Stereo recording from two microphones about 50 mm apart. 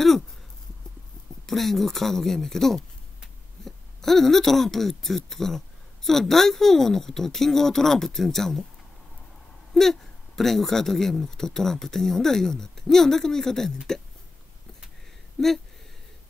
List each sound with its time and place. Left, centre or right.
1.4 s speech: centre
9.8 s speech: centre
15.4 s speech: centre